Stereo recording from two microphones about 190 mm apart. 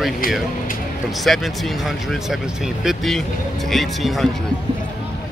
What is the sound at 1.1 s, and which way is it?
Speech, centre (ahead or behind).